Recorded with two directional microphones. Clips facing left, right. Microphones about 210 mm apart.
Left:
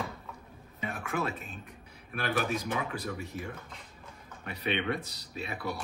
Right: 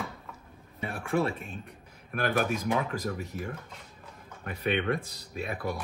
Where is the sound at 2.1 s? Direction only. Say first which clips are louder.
Right 3 dB; 50° right (ahead or behind).